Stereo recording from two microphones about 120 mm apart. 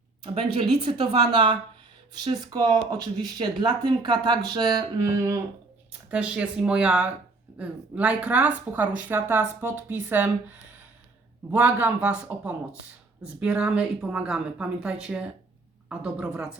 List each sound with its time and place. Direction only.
0.5 s a woman's voice: 45° right (ahead or behind); by 5.4 s 25° right (ahead or behind)
6.1 s a woman's voice: 10° right (ahead or behind)
11.5 s a woman's voice: 15° right (ahead or behind)